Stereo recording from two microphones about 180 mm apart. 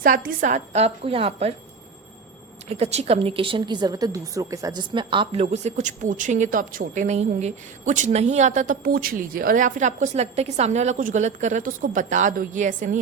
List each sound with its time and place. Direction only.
0.0 s a woman's voice: 50° right (ahead or behind); by 1.5 s 35° right (ahead or behind)
2.6 s a woman's voice: 35° right (ahead or behind)